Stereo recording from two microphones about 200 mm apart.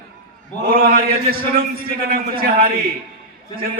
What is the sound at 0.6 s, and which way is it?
A man's voice, 45° right (ahead or behind).